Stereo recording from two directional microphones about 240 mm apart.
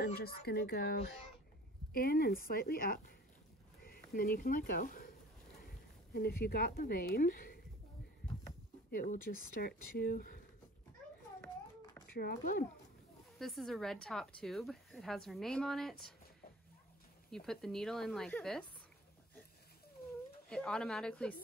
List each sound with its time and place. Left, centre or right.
0.0 s speech: left
4.1 s speech: left
8.9 s speech: left
11.4 s a sound: centre
12.1 s speech: left
13.4 s a woman's voice: centre
17.5 s a woman's voice: centre
20.4 s a woman's voice: centre